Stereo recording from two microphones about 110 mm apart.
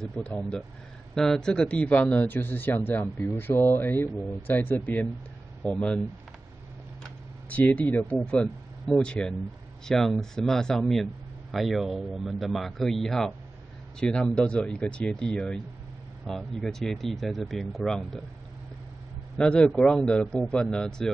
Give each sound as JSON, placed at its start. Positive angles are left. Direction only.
{"t": 0.0, "sound": "speech", "side_deg": 10}
{"t": 7.0, "sound": "speech", "side_deg": 15}
{"t": 19.3, "sound": "speech", "side_deg": 10}